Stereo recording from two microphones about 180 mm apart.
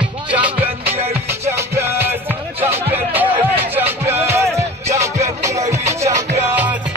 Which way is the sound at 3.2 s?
10° right (ahead or behind).